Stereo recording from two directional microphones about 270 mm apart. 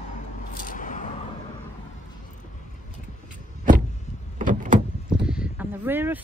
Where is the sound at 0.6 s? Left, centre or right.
Left.